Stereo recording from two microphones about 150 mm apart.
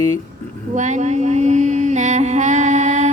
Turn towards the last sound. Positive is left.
turn(degrees=-50)  # may be behind; listen again after turning